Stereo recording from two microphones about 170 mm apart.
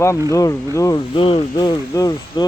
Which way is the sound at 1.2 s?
35° left (ahead or behind).